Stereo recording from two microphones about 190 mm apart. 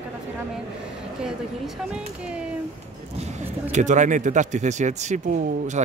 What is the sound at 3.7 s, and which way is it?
A man's voice, 40° right (ahead or behind).